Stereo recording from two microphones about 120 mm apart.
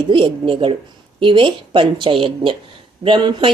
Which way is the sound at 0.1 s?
45° right (ahead or behind).